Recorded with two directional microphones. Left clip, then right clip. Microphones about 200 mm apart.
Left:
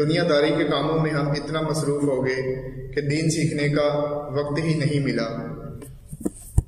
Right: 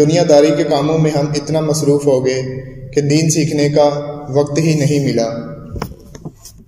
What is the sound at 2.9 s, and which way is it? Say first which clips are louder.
A man's voice: right 10 dB; 15° right (ahead or behind).